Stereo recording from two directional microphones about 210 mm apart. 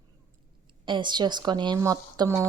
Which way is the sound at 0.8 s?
20° right (ahead or behind).